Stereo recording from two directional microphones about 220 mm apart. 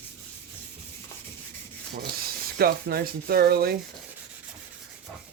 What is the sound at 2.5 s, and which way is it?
Speech, 45° right (ahead or behind).